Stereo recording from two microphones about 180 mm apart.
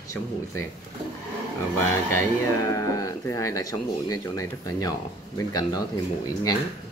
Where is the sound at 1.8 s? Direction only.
15° left (ahead or behind).